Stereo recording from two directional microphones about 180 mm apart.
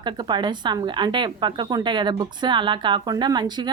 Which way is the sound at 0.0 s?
25° right (ahead or behind).